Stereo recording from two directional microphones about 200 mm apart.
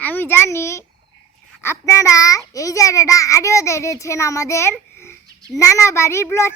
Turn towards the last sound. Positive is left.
turn(degrees=15)  # may be behind; listen again after turning